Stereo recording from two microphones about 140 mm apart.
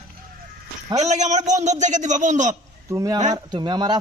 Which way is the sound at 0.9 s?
55° right (ahead or behind).